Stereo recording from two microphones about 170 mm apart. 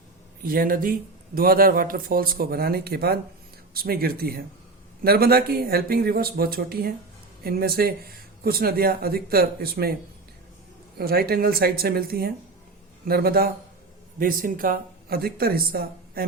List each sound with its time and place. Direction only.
0.4 s speech: 60° right (ahead or behind)
10.9 s speech: 65° right (ahead or behind)